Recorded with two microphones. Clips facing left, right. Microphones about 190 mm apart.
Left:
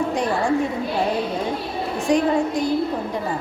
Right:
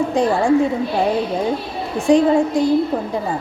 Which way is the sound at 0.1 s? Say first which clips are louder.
Right 5 dB; 30° right (ahead or behind).